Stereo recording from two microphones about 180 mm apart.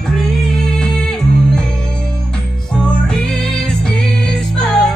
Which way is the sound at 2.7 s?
5° left (ahead or behind).